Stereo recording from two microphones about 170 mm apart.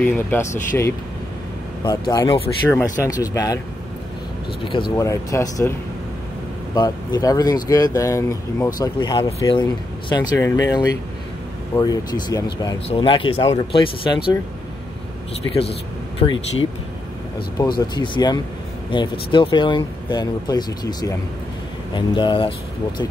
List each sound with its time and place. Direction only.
0.0 s speech: 15° left (ahead or behind)
2.7 s speech: 15° left (ahead or behind)
4.9 s speech: 20° left (ahead or behind)
12.8 s speech: 30° left (ahead or behind)
15.4 s speech: 20° left (ahead or behind)
16.2 s speech: 35° left (ahead or behind)
17.6 s speech: 25° left (ahead or behind)